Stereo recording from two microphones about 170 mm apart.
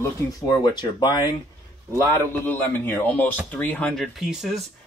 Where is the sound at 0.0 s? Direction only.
25° left (ahead or behind).